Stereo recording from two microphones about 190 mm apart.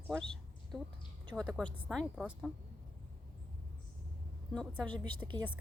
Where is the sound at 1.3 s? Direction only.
5° left (ahead or behind).